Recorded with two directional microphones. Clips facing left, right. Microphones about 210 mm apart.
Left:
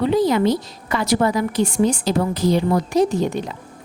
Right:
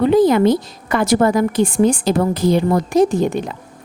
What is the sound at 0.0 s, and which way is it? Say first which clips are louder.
A woman's voice: right 5 dB; 50° right (ahead or behind).